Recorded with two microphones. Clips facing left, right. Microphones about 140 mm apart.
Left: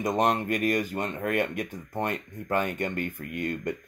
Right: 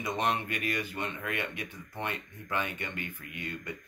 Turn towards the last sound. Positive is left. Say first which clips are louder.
# left 9 dB
turn(degrees=50)  # may be behind; listen again after turning